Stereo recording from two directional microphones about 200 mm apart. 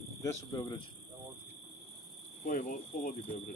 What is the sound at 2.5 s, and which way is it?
Cricket, 40° left (ahead or behind).